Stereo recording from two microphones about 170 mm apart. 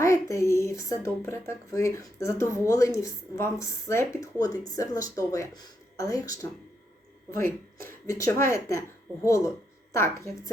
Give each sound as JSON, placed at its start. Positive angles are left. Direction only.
{"t": 0.0, "sound": "speech", "side_deg": 15}
{"t": 9.9, "sound": "speech", "side_deg": 15}